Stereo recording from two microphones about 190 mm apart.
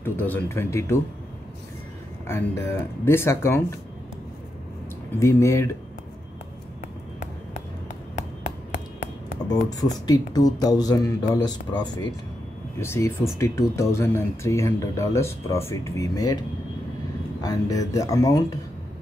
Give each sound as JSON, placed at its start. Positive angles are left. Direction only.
{"t": 0.0, "sound": "speech", "side_deg": 10}
{"t": 2.2, "sound": "speech", "side_deg": 15}
{"t": 5.2, "sound": "speech", "side_deg": 15}
{"t": 8.2, "sound": "a sound", "side_deg": 40}
{"t": 10.0, "sound": "speech", "side_deg": 20}
{"t": 17.4, "sound": "speech", "side_deg": 20}